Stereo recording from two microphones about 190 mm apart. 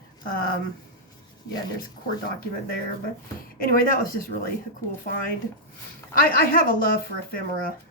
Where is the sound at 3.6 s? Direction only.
50° left (ahead or behind).